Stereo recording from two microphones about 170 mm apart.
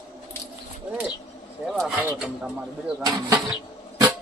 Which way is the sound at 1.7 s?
5° right (ahead or behind).